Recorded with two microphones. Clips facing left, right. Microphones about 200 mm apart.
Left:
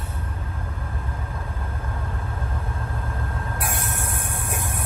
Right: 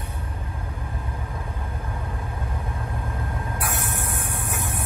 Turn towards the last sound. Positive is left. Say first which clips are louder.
# even
turn(degrees=50)  # may be behind; listen again after turning